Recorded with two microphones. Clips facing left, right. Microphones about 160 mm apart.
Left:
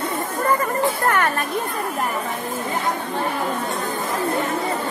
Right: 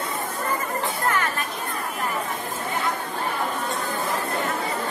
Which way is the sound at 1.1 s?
60° left (ahead or behind).